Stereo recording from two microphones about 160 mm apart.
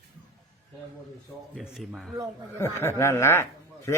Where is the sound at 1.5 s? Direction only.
Centre (ahead or behind).